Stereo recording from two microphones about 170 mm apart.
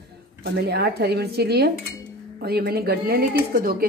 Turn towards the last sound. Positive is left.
turn(degrees=-60)  # may be behind; listen again after turning